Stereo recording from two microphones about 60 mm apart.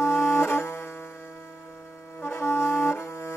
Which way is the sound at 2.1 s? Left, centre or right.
Left.